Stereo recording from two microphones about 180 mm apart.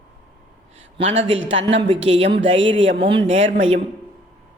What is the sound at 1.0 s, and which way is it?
Speech, 35° right (ahead or behind).